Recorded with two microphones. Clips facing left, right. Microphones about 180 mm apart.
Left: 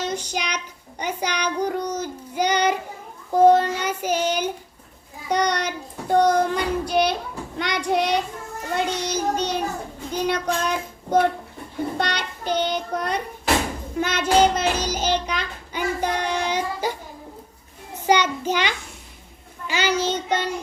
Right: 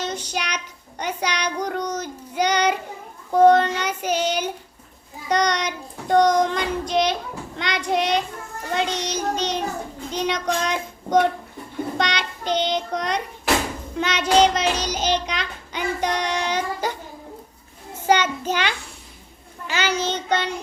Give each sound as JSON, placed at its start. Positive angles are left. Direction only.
{"t": 0.0, "sound": "child singing", "side_deg": 10}
{"t": 0.5, "sound": "a child's voice", "side_deg": 10}
{"t": 1.5, "sound": "child singing", "side_deg": 10}
{"t": 18.0, "sound": "a child's voice", "side_deg": 15}
{"t": 19.6, "sound": "child singing", "side_deg": 10}